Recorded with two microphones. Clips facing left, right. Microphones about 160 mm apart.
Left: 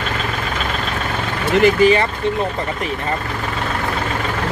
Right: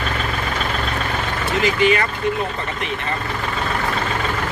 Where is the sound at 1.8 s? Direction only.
30° left (ahead or behind).